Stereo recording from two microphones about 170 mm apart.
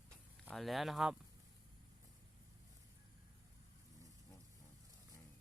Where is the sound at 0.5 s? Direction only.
Centre (ahead or behind).